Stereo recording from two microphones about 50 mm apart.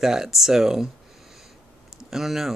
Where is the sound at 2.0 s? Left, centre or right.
Centre.